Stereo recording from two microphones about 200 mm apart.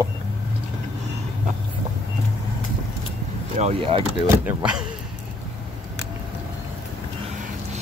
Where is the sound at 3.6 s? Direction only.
30° right (ahead or behind).